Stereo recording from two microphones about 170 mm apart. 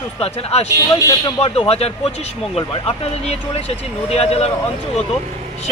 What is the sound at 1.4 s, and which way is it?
Speech, 35° left (ahead or behind).